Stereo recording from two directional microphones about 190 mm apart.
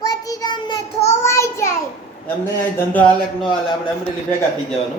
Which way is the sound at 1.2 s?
15° left (ahead or behind).